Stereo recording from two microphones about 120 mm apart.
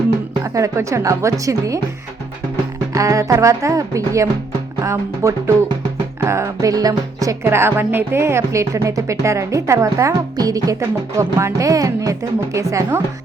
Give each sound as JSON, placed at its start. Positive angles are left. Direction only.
{"t": 0.4, "sound": "speech", "side_deg": -25}
{"t": 2.9, "sound": "speech", "side_deg": -30}